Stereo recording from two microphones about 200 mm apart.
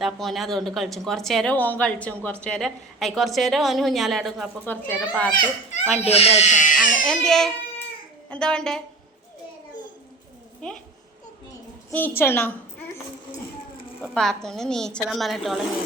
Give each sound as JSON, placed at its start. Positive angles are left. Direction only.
{"t": 0.0, "sound": "speech", "side_deg": 0}
{"t": 6.0, "sound": "speech", "side_deg": 30}
{"t": 6.7, "sound": "speech", "side_deg": 0}
{"t": 11.9, "sound": "a woman's voice", "side_deg": 10}
{"t": 14.0, "sound": "speech", "side_deg": 0}